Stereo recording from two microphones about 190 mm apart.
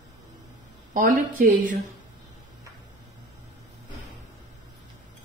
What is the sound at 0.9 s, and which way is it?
Speech, 45° right (ahead or behind).